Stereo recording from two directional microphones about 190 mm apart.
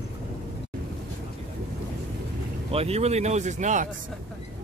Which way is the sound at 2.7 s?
35° right (ahead or behind).